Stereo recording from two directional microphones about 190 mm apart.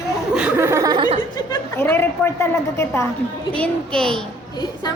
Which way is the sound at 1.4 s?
15° left (ahead or behind).